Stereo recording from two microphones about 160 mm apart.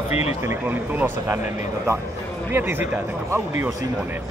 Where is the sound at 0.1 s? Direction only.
40° left (ahead or behind).